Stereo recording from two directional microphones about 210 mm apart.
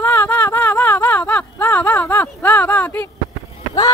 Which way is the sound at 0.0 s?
10° left (ahead or behind).